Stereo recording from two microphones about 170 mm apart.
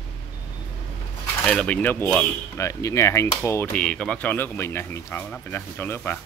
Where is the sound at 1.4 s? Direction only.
5° left (ahead or behind).